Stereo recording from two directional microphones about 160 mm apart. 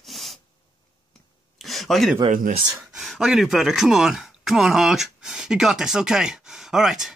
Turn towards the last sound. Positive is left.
turn(degrees=-5)  # may be behind; listen again after turning